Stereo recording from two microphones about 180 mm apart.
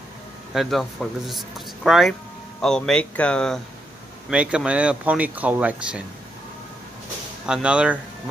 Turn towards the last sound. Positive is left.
turn(degrees=-5)  # may be behind; listen again after turning